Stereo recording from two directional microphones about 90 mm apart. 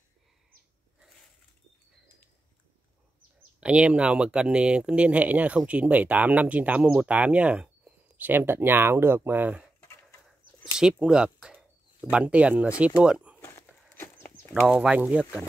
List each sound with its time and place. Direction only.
3.6 s speech: 10° right (ahead or behind)
10.2 s speech: 5° right (ahead or behind)
13.4 s a sound: 30° left (ahead or behind)
14.7 s speech: 10° right (ahead or behind)